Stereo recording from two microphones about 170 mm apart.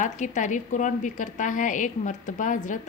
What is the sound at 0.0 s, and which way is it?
A woman's voice, 45° left (ahead or behind).